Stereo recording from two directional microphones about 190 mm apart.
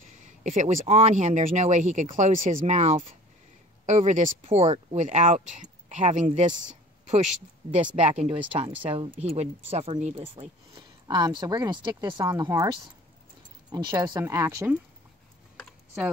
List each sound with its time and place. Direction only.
0.2 s speech: 40° right (ahead or behind); by 14.8 s 15° right (ahead or behind)
15.5 s computer keyboard: centre (ahead or behind)